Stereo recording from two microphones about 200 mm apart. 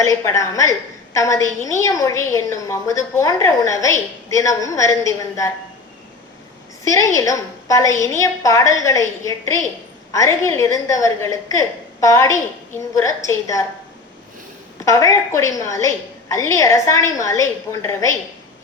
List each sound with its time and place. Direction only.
0.0 s a woman's voice: 15° left (ahead or behind)
6.9 s a woman's voice: 15° left (ahead or behind)
14.8 s a woman's voice: 15° left (ahead or behind)